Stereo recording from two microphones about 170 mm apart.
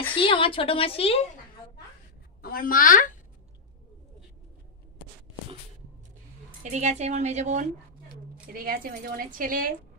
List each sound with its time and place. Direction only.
0.1 s a woman's voice: 30° left (ahead or behind)
2.4 s a woman's voice: 60° left (ahead or behind)
6.6 s a woman's voice: 45° right (ahead or behind)
8.1 s a woman's voice: 60° right (ahead or behind)